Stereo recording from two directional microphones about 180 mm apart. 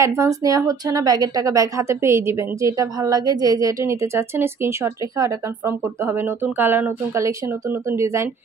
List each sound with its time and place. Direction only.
0.0 s a woman's voice: 20° right (ahead or behind)